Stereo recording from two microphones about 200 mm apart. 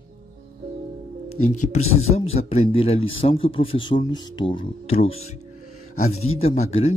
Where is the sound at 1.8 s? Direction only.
90° left.